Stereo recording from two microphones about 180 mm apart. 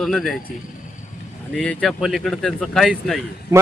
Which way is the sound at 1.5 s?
5° left (ahead or behind).